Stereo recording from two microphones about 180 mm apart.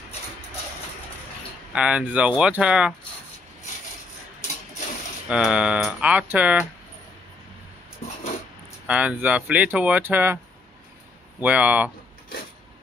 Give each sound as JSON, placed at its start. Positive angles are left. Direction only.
{"t": 1.7, "sound": "speech", "side_deg": -5}
{"t": 5.3, "sound": "speech", "side_deg": -5}
{"t": 8.0, "sound": "a sound", "side_deg": 40}
{"t": 8.8, "sound": "speech", "side_deg": -5}
{"t": 11.4, "sound": "speech", "side_deg": -10}